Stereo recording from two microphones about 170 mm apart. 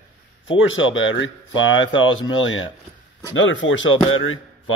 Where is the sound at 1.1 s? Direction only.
90° left.